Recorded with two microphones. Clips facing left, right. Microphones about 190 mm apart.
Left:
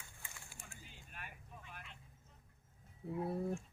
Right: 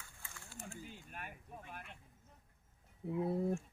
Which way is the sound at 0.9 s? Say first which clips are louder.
Right 5 dB; 50° right (ahead or behind).